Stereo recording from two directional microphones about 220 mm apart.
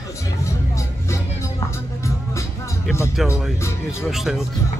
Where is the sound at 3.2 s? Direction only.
Centre (ahead or behind).